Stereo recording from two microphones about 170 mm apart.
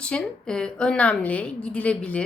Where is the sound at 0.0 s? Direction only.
5° left (ahead or behind).